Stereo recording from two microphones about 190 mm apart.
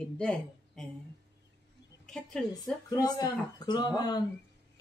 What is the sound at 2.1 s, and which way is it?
Speech, 5° left (ahead or behind).